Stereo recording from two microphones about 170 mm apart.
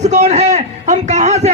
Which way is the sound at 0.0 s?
45° right (ahead or behind).